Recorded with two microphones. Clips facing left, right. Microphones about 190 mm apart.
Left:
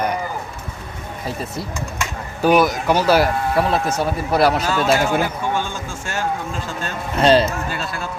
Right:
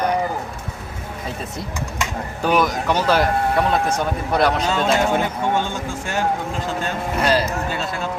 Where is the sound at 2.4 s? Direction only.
10° left (ahead or behind).